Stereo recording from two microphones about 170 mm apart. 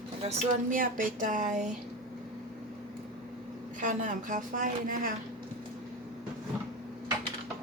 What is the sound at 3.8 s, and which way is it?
Speech, 50° right (ahead or behind).